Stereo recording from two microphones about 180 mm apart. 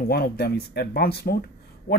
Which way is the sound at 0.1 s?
60° left (ahead or behind).